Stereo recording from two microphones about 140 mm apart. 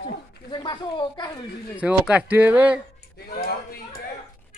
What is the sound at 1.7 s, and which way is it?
Speech, 10° right (ahead or behind).